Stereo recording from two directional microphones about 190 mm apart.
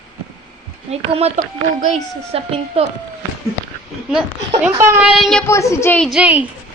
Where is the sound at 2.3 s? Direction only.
30° right (ahead or behind).